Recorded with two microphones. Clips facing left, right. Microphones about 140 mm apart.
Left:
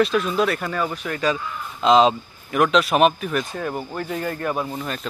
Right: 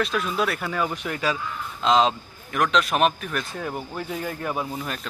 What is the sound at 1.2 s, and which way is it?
A man's voice, centre (ahead or behind).